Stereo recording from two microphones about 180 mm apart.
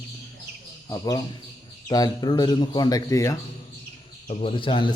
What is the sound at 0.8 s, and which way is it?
Speech, 20° left (ahead or behind).